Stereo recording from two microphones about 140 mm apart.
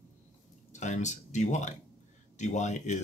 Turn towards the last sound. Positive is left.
turn(degrees=55)  # may be behind; listen again after turning